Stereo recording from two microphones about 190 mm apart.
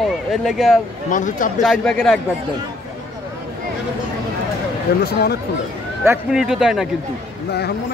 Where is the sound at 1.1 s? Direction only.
45° left (ahead or behind).